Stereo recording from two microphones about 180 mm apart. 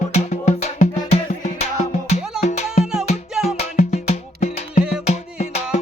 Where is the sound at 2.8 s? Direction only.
Centre (ahead or behind).